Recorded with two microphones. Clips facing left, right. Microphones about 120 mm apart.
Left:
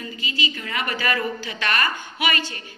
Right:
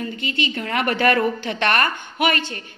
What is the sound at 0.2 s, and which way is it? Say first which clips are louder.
A woman's voice: right 1 dB; 60° right (ahead or behind).